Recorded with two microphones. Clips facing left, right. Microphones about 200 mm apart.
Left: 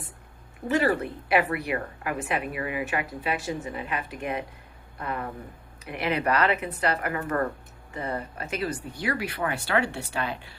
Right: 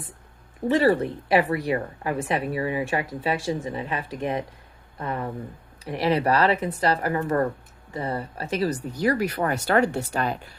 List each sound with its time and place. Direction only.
0.7 s speech: 30° right (ahead or behind)